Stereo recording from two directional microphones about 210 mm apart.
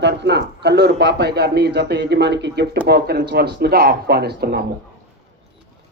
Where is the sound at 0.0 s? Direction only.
55° right (ahead or behind).